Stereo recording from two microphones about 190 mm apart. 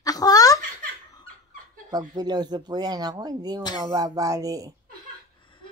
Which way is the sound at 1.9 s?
20° right (ahead or behind).